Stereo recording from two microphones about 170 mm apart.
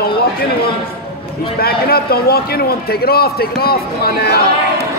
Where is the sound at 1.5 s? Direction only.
65° left (ahead or behind).